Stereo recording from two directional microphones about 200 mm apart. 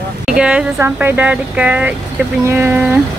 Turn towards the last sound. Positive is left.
turn(degrees=-10)  # may be behind; listen again after turning